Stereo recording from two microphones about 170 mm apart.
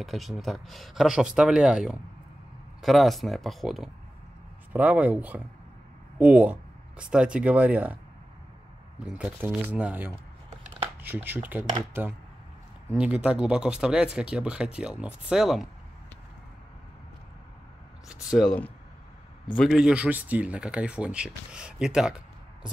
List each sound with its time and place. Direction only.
0.0 s speech: centre (ahead or behind)
9.0 s speech: 5° right (ahead or behind)
12.9 s speech: 5° right (ahead or behind)
18.3 s speech: 5° left (ahead or behind)